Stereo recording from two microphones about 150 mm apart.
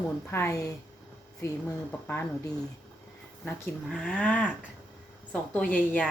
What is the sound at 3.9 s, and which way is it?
Speech, 5° left (ahead or behind).